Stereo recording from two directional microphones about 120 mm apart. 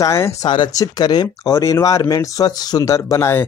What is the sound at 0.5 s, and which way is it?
Speech, 35° left (ahead or behind).